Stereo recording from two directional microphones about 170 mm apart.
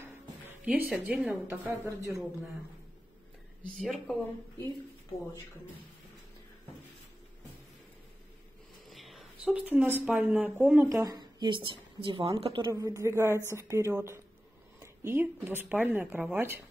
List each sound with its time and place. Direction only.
0.7 s speech: 10° right (ahead or behind)
3.7 s speech: centre (ahead or behind)
8.9 s speech: centre (ahead or behind)
10.9 s a woman's voice: 20° right (ahead or behind)